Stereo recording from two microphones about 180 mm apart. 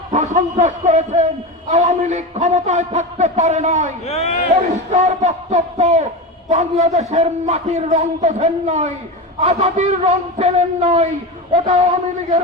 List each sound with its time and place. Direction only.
0.1 s a man's voice: 40° right (ahead or behind)
4.0 s speech: 35° left (ahead or behind)
4.5 s a man's voice: 40° right (ahead or behind)